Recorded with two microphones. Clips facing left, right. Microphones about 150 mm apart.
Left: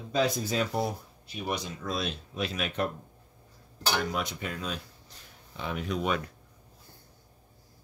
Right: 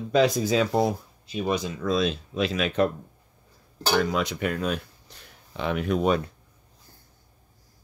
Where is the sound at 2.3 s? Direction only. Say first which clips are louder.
Right 7 dB; 90° right.